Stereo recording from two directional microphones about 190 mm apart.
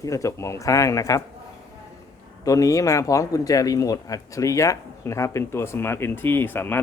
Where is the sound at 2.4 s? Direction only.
15° left (ahead or behind).